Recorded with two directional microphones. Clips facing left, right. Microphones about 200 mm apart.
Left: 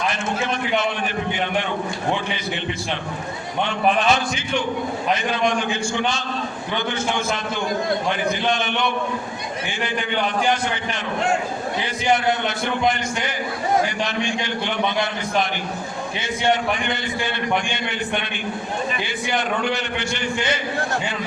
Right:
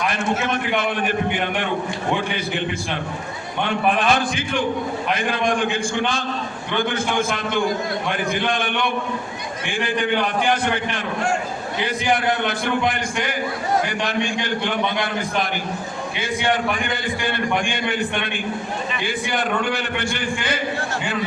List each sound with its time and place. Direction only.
3.7 s a man's voice: 55° right (ahead or behind)
8.3 s a man's voice: 55° right (ahead or behind)
12.1 s a man's voice: 55° right (ahead or behind)
19.0 s a man's voice: 55° right (ahead or behind)